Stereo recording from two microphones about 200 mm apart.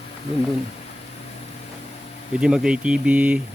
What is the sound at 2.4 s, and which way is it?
Speech, 5° right (ahead or behind).